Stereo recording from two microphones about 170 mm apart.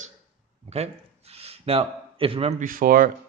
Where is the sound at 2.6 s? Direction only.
55° right (ahead or behind).